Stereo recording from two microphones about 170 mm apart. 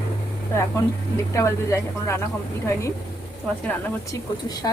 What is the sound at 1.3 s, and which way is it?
Speech, 15° left (ahead or behind).